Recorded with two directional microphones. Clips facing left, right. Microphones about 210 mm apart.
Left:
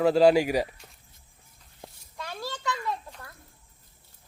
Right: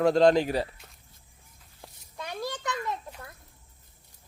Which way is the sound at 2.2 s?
20° right (ahead or behind).